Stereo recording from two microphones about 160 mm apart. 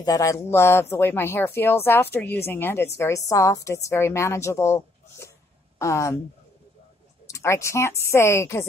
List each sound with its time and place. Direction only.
0.0 s a woman's voice: 20° left (ahead or behind)
7.2 s a woman's voice: 20° left (ahead or behind)